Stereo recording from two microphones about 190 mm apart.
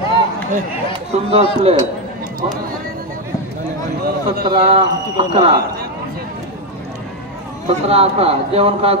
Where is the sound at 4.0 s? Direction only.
55° right (ahead or behind).